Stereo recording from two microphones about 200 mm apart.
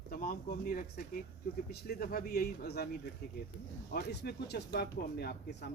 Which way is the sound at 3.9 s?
55° left (ahead or behind).